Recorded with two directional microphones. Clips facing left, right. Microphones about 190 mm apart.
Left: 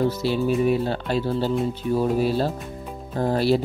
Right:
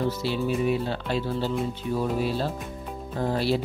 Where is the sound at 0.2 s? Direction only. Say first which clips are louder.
Left 4 dB; 45° left (ahead or behind).